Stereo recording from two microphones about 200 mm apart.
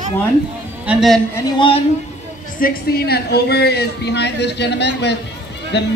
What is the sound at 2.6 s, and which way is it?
Speech, 50° left (ahead or behind).